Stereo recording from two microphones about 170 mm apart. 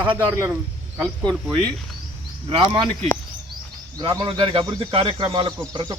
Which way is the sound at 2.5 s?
25° right (ahead or behind).